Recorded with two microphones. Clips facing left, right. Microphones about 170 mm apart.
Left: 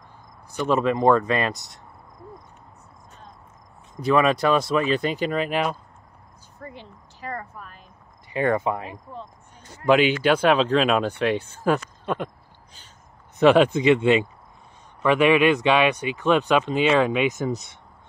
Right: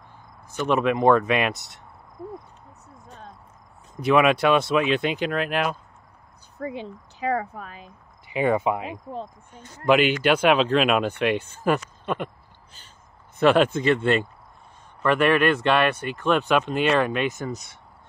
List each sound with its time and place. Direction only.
0.6 s speech: centre (ahead or behind)
3.9 s speech: 5° right (ahead or behind)
6.6 s speech: 75° right (ahead or behind)
7.2 s speech: 85° right
8.4 s speech: 10° right (ahead or behind)
13.4 s speech: 15° left (ahead or behind)
15.0 s speech: 10° left (ahead or behind)
16.5 s speech: 10° right (ahead or behind)
16.9 s speech: 10° left (ahead or behind)